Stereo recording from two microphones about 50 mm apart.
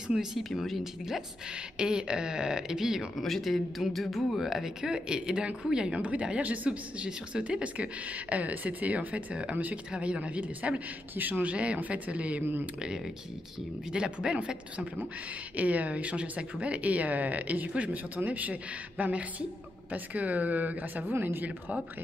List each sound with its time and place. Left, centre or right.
0.1 s speech: centre
1.8 s speech: centre
3.2 s speech: centre
4.8 s speech: centre
5.9 s speech: right
11.1 s speech: right
11.4 s speech: right
13.9 s speech: centre
15.5 s speech: right